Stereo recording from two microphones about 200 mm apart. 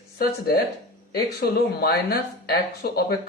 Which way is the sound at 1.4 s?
50° left (ahead or behind).